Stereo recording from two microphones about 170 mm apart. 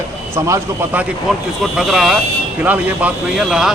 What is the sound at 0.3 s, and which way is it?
Speech, 20° right (ahead or behind).